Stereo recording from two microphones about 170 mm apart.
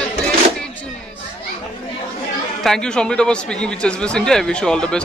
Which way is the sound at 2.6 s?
5° left (ahead or behind).